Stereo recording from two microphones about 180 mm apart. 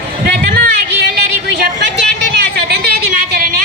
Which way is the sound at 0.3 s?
60° right (ahead or behind).